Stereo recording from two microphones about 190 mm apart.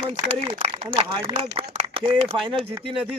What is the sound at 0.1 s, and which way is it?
Speech, 30° right (ahead or behind).